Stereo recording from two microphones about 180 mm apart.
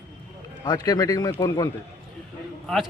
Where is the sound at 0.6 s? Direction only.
20° left (ahead or behind).